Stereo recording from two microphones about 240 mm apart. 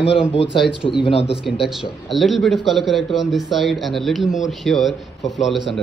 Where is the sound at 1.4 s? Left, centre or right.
Centre.